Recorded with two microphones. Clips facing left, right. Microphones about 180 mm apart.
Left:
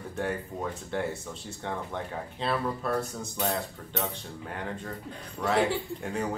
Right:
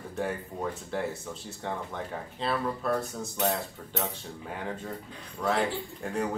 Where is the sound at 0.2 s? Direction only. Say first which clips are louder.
Even; centre (ahead or behind).